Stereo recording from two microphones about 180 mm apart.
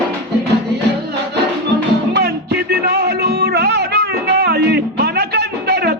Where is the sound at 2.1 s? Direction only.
65° right (ahead or behind).